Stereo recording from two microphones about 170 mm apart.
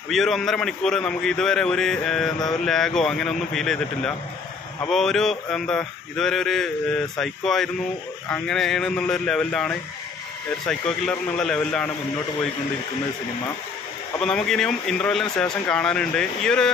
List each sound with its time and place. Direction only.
0.1 s a man's voice: centre (ahead or behind)
14.2 s a man's voice: 5° left (ahead or behind)